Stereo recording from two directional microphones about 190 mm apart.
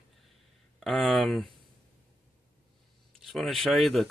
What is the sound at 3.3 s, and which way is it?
Speech, centre (ahead or behind).